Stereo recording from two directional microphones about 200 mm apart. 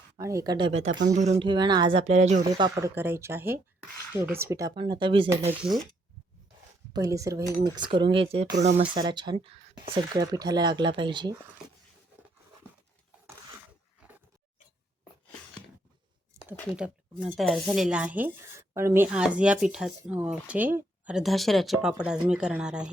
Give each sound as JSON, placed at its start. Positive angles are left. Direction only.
{"t": 0.2, "sound": "speech", "side_deg": -15}
{"t": 0.9, "sound": "speech", "side_deg": -60}
{"t": 1.1, "sound": "speech", "side_deg": -35}
{"t": 2.4, "sound": "speech", "side_deg": -20}
{"t": 6.9, "sound": "speech", "side_deg": -15}
{"t": 16.3, "sound": "a sound", "side_deg": -10}
{"t": 16.7, "sound": "speech", "side_deg": -5}